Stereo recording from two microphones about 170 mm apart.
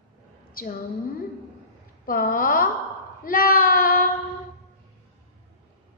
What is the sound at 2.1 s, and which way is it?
Speech, 55° left (ahead or behind).